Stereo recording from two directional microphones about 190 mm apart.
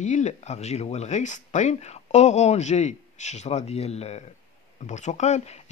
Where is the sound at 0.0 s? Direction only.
40° left (ahead or behind).